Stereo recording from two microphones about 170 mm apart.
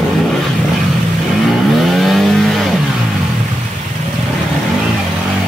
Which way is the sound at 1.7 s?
Centre (ahead or behind).